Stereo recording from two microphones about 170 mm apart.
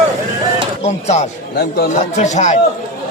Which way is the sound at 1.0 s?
40° left (ahead or behind).